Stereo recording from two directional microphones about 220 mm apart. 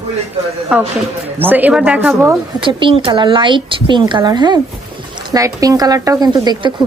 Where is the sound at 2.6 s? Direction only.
25° right (ahead or behind).